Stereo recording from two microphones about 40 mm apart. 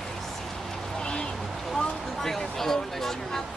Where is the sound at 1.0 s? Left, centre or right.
Left.